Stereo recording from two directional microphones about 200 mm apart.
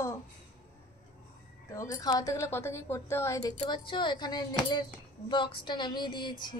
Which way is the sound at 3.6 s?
25° left (ahead or behind).